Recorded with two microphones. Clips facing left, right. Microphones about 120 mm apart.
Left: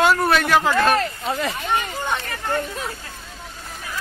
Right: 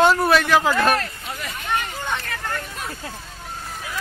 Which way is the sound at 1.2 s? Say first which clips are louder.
Left 9 dB; 60° left (ahead or behind).